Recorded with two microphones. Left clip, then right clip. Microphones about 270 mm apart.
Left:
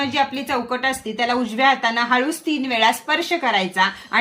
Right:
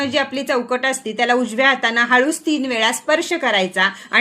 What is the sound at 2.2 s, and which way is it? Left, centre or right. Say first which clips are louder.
A woman's voice: right 4 dB; centre.